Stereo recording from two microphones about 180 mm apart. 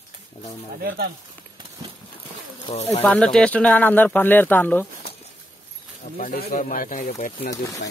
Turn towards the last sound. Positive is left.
turn(degrees=45)  # may be behind; listen again after turning